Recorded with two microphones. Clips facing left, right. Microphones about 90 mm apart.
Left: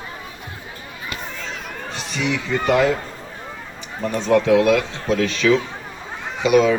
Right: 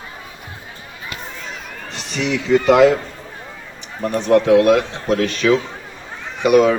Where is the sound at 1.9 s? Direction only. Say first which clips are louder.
Right 2 dB; 65° right (ahead or behind); by 2.9 s 85° right.